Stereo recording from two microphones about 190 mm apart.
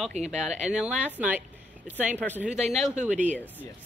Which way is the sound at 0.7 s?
5° right (ahead or behind).